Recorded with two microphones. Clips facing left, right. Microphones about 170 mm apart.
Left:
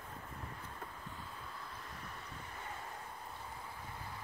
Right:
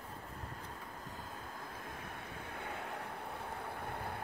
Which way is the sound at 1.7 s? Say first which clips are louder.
Right 3 dB; 50° right (ahead or behind).